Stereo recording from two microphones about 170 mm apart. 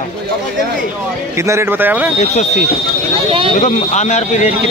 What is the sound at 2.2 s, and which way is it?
Speech, 45° left (ahead or behind).